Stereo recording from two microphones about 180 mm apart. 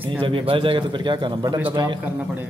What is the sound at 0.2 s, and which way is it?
Speech, 30° right (ahead or behind).